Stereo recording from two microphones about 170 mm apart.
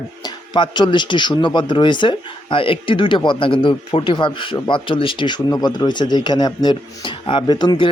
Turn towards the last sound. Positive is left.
turn(degrees=25)  # may be behind; listen again after turning